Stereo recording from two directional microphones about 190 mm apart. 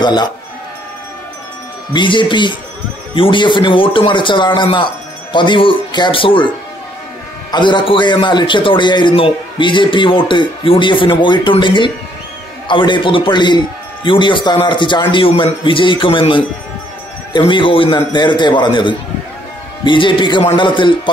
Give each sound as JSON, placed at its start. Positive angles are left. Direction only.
{"t": 0.0, "sound": "speech", "side_deg": 20}
{"t": 2.0, "sound": "a man's voice", "side_deg": 25}
{"t": 7.5, "sound": "a man's voice", "side_deg": 25}